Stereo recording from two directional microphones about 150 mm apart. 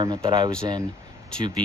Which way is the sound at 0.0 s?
30° right (ahead or behind).